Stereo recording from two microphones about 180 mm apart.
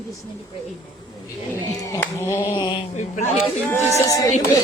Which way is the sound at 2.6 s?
25° left (ahead or behind).